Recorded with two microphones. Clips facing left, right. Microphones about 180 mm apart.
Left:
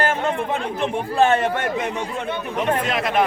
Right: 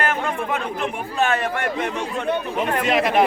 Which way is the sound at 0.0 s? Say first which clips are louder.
Left 2 dB; 30° left (ahead or behind).